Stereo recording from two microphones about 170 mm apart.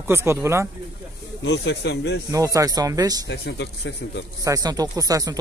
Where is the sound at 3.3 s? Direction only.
90° left.